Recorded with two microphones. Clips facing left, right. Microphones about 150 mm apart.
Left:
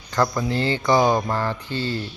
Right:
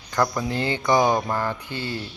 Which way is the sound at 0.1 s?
15° right (ahead or behind).